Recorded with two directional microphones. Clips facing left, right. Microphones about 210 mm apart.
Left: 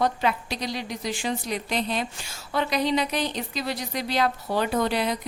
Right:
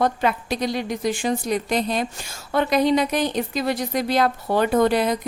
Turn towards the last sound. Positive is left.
turn(degrees=-50)  # may be behind; listen again after turning